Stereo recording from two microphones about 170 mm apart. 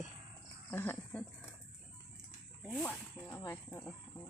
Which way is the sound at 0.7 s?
10° left (ahead or behind).